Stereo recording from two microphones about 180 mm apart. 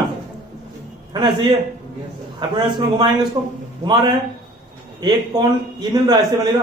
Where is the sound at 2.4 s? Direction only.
25° right (ahead or behind).